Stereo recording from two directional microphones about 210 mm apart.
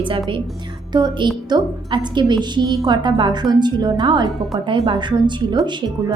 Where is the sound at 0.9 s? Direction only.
20° right (ahead or behind).